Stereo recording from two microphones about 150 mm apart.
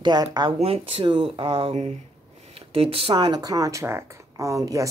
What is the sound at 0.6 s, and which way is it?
Speech, 40° right (ahead or behind).